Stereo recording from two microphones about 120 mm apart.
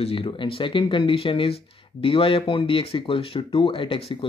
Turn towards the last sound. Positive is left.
turn(degrees=50)  # may be behind; listen again after turning